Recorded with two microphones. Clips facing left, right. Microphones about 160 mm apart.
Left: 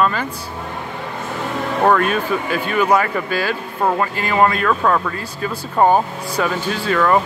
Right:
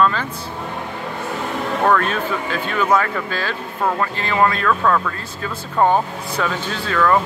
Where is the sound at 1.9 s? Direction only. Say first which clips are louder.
Left 3 dB; 10° left (ahead or behind).